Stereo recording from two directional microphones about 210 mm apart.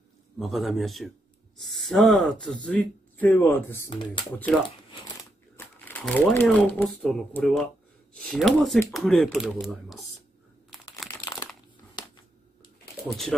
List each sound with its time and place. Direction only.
0.4 s speech: centre (ahead or behind)
3.9 s speech: 20° left (ahead or behind)
5.9 s speech: 10° left (ahead or behind)
11.1 s crumpling: 20° left (ahead or behind)